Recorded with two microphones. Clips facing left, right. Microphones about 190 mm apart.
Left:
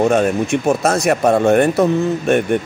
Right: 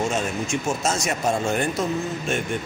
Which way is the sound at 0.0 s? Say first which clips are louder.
Left 10 dB; 60° left (ahead or behind).